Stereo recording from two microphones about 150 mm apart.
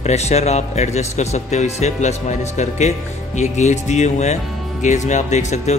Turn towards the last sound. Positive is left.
turn(degrees=50)  # may be behind; listen again after turning